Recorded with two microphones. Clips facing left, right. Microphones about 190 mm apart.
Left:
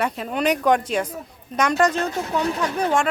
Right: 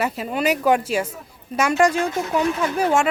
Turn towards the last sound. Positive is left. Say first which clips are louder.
# right 2 dB
turn(degrees=-5)  # may be behind; listen again after turning